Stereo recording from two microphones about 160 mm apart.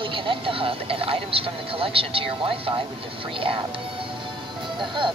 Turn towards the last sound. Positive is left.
turn(degrees=-30)  # may be behind; listen again after turning